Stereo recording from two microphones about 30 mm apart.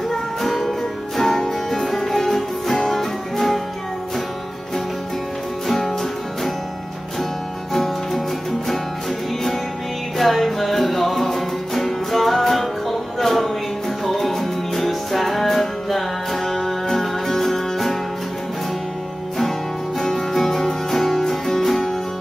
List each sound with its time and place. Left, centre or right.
0.1 s music: centre
5.7 s music: centre
7.7 s music: centre
10.1 s music: centre
20.1 s music: centre